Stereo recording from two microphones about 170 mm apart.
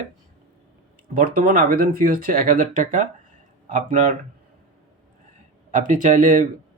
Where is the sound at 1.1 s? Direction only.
55° right (ahead or behind).